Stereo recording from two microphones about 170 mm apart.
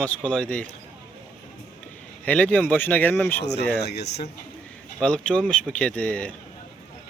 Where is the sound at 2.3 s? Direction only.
5° left (ahead or behind).